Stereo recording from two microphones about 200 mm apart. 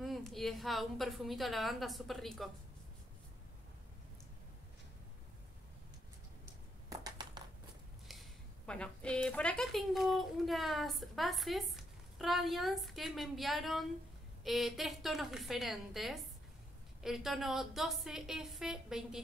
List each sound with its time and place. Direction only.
0.0 s a woman's voice: centre (ahead or behind)
6.9 s a sound: 20° right (ahead or behind)
8.1 s a woman's voice: centre (ahead or behind)